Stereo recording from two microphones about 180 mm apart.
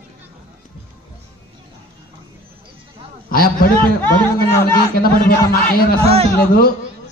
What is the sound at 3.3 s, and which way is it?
Speech, 55° left (ahead or behind).